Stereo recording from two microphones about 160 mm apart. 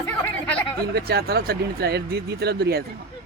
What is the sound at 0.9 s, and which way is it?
Speech, 80° right.